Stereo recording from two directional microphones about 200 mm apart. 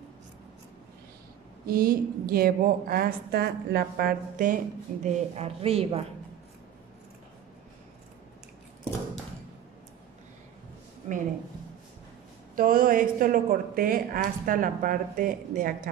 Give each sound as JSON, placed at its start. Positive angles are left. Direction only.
{"t": 1.7, "sound": "speech", "side_deg": -45}
{"t": 5.0, "sound": "a woman's voice", "side_deg": -30}
{"t": 12.5, "sound": "speech", "side_deg": -45}